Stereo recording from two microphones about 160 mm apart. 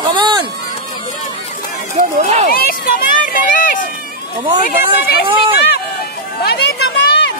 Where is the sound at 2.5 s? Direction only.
70° left (ahead or behind).